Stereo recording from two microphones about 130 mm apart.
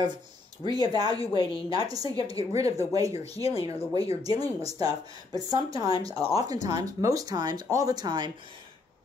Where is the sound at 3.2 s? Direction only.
50° left (ahead or behind).